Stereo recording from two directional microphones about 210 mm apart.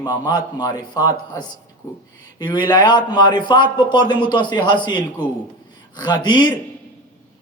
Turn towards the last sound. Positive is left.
turn(degrees=20)  # may be behind; listen again after turning